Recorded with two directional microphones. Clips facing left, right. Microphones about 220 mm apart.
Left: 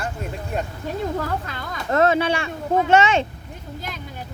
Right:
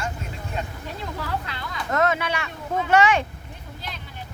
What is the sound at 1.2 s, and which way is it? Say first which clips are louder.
Speech: left 3 dB; 45° left (ahead or behind).